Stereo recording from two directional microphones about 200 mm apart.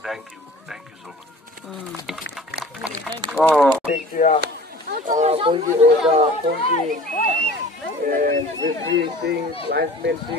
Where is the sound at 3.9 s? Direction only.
40° left (ahead or behind).